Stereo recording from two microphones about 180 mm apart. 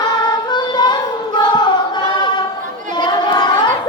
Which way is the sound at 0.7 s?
25° left (ahead or behind).